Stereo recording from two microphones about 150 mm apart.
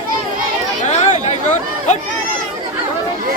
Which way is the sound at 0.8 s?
50° left (ahead or behind).